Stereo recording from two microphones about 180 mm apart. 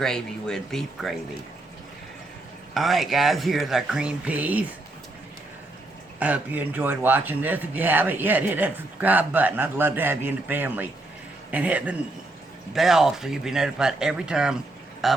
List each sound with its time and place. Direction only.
0.0 s speech: 5° left (ahead or behind)
2.7 s speech: centre (ahead or behind)
6.1 s speech: 10° right (ahead or behind)